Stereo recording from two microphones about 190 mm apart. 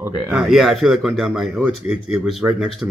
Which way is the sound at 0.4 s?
Centre (ahead or behind).